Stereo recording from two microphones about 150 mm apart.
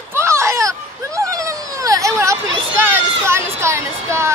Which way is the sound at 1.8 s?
20° right (ahead or behind).